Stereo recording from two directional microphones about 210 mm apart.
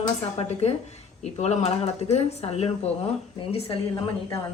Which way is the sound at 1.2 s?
30° left (ahead or behind).